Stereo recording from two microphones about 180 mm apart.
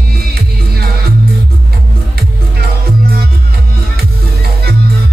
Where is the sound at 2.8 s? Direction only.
55° right (ahead or behind).